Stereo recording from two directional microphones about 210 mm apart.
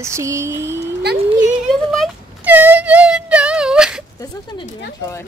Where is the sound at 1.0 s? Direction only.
50° right (ahead or behind).